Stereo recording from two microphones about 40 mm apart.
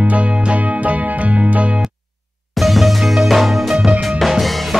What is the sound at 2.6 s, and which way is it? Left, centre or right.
Music, centre.